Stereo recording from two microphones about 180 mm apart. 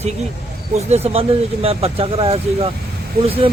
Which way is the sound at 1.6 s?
30° right (ahead or behind).